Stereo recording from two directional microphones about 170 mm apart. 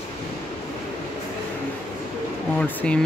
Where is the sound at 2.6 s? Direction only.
10° left (ahead or behind).